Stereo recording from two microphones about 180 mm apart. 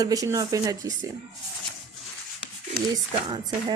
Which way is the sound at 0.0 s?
20° right (ahead or behind).